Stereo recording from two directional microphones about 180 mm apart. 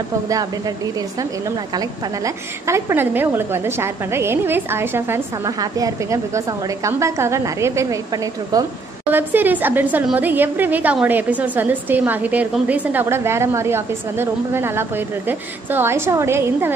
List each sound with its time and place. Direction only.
0.3 s a woman's voice: 20° right (ahead or behind)
1.8 s a woman's voice: 15° right (ahead or behind)